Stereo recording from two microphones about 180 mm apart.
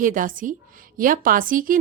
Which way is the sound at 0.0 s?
45° right (ahead or behind).